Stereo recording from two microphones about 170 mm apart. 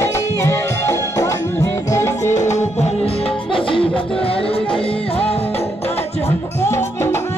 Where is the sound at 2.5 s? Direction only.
40° left (ahead or behind).